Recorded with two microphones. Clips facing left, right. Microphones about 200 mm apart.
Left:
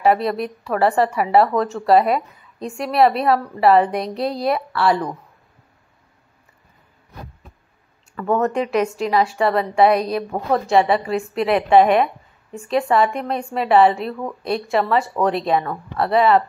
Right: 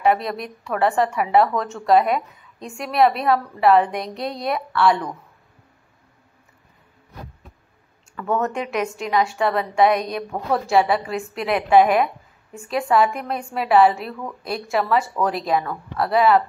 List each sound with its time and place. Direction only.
0.0 s a woman's voice: centre (ahead or behind)
8.2 s a woman's voice: centre (ahead or behind)
15.5 s a woman's voice: 30° left (ahead or behind)
16.0 s a woman's voice: centre (ahead or behind)